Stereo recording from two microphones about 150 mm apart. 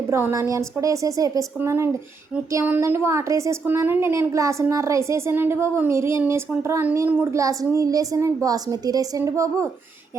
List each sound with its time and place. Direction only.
0.1 s a woman's voice: 15° right (ahead or behind)